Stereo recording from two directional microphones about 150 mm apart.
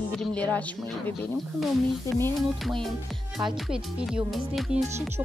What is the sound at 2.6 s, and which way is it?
Music, centre (ahead or behind).